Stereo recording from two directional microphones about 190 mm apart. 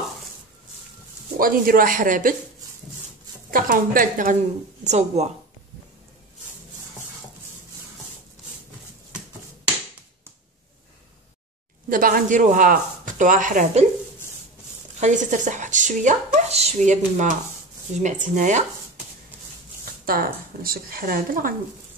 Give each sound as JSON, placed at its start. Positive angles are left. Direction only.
{"t": 1.4, "sound": "speech", "side_deg": -50}
{"t": 3.4, "sound": "speech", "side_deg": -45}
{"t": 11.9, "sound": "speech", "side_deg": -50}
{"t": 15.0, "sound": "speech", "side_deg": -40}
{"t": 19.8, "sound": "speech", "side_deg": -50}